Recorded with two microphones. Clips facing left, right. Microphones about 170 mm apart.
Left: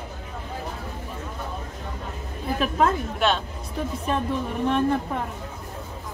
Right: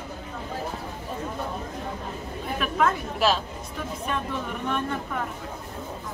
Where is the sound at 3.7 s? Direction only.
35° left (ahead or behind).